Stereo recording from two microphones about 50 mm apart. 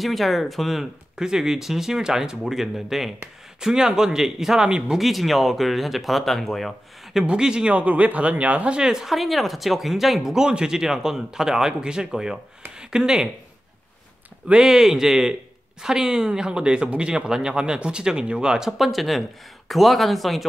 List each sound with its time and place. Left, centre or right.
0.0 s speech: centre
1.1 s speech: centre
4.9 s speech: centre
7.2 s speech: centre
7.7 s speech: right; by 9.1 s centre
9.1 s speech: centre
14.5 s speech: centre
18.7 s speech: centre